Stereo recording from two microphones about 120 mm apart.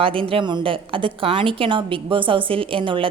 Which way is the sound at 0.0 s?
50° right (ahead or behind).